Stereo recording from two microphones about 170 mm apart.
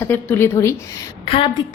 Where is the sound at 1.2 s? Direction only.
30° left (ahead or behind).